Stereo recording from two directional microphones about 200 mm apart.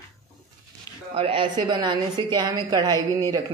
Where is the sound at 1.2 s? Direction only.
25° right (ahead or behind).